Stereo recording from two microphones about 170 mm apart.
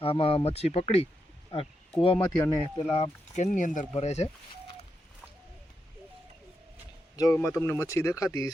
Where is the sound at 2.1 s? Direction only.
15° left (ahead or behind).